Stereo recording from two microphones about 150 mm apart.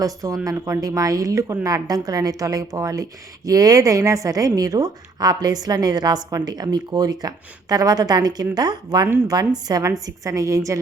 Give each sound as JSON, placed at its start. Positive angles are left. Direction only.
{"t": 0.0, "sound": "a woman's voice", "side_deg": -20}